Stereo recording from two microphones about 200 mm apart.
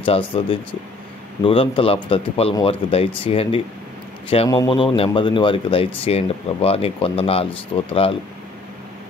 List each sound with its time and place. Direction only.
0.0 s speech: 25° left (ahead or behind)